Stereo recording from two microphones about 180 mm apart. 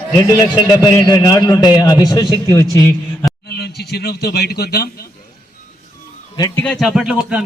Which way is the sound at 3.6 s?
60° left (ahead or behind).